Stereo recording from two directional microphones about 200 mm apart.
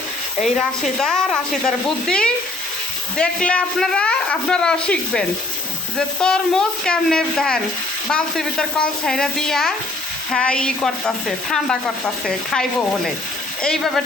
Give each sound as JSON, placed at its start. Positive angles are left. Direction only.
{"t": 0.4, "sound": "speech", "side_deg": 0}